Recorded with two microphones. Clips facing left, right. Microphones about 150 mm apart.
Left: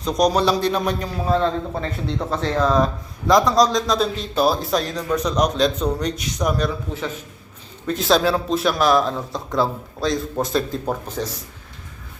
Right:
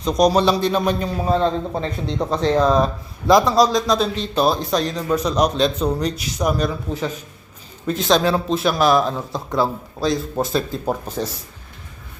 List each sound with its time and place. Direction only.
0.3 s speech: centre (ahead or behind)
1.2 s speech: 15° right (ahead or behind)
7.9 s speech: centre (ahead or behind)